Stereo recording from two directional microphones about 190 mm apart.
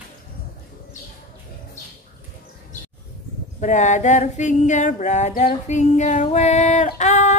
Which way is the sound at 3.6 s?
40° left (ahead or behind).